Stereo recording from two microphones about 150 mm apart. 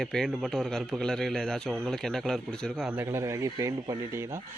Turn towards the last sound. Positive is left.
turn(degrees=-20)  # may be behind; listen again after turning